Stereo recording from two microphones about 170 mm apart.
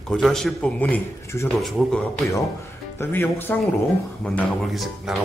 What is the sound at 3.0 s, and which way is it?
Speech, 10° left (ahead or behind).